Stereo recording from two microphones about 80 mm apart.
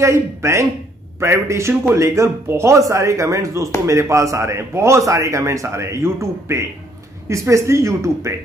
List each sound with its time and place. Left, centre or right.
0.0 s a man's voice: right